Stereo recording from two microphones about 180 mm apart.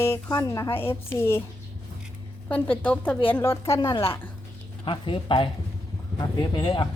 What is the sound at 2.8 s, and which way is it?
A woman's voice, 10° left (ahead or behind).